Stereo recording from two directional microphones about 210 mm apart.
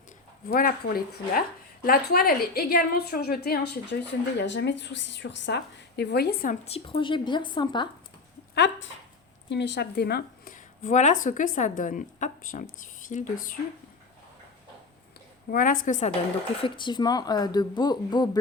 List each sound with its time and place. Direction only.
0.4 s speech: 45° left (ahead or behind)
6.7 s speech: 25° left (ahead or behind)
8.5 s a woman's voice: 55° left (ahead or behind)
15.4 s a woman's voice: 40° left (ahead or behind)
16.6 s speech: 20° left (ahead or behind)